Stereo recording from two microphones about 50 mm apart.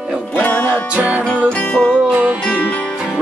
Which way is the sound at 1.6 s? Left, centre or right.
Left.